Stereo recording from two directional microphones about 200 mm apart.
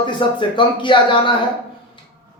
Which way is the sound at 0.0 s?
25° left (ahead or behind).